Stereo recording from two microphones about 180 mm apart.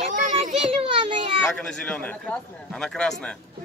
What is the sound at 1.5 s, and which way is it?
A man's voice, 5° left (ahead or behind).